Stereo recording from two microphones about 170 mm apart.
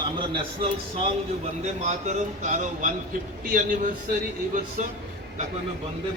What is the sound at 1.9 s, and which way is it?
Speech, 45° right (ahead or behind).